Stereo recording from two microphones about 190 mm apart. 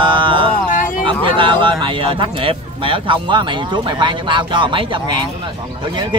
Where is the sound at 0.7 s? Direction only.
45° left (ahead or behind).